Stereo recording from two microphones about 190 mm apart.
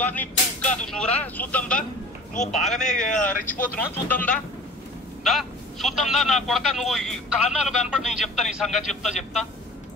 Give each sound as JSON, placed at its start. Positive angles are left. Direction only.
{"t": 0.0, "sound": "speech", "side_deg": 10}
{"t": 2.4, "sound": "speech", "side_deg": 35}
{"t": 2.7, "sound": "speech", "side_deg": 5}
{"t": 3.4, "sound": "speech", "side_deg": 45}
{"t": 4.1, "sound": "speech", "side_deg": 10}